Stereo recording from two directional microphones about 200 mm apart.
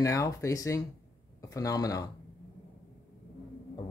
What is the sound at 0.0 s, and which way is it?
Speech, 15° left (ahead or behind).